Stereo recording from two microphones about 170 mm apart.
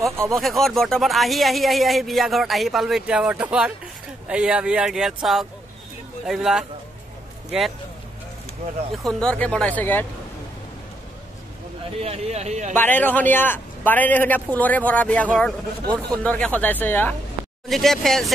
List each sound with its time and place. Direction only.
0.0 s speech: 15° right (ahead or behind)
0.3 s speech: centre (ahead or behind)
9.0 s a man's voice: 5° left (ahead or behind)
12.0 s speech: 40° right (ahead or behind)
12.7 s a man's voice: 10° left (ahead or behind)